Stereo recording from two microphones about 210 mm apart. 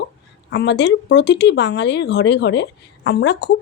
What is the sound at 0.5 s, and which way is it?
Speech, 55° left (ahead or behind).